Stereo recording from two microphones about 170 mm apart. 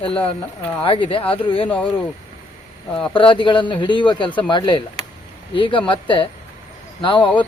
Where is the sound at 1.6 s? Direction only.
10° left (ahead or behind).